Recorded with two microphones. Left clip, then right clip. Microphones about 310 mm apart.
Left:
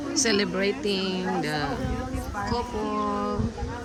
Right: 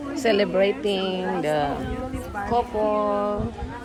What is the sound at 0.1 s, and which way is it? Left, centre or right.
Speech, centre.